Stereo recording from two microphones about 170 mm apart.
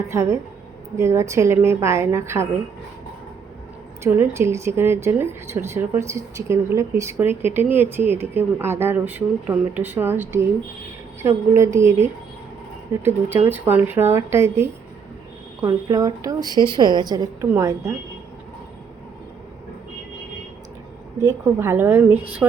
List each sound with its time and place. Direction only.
0.1 s speech: 15° right (ahead or behind)
4.0 s speech: 15° right (ahead or behind)
13.5 s a woman's voice: 10° right (ahead or behind)
21.2 s speech: 15° right (ahead or behind)